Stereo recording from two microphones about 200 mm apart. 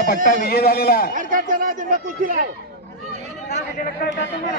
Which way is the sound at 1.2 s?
45° right (ahead or behind).